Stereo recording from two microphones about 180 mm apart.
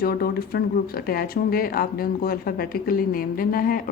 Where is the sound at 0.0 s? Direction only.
55° left (ahead or behind).